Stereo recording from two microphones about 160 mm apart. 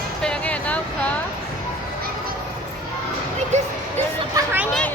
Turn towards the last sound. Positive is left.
turn(degrees=-10)  # may be behind; listen again after turning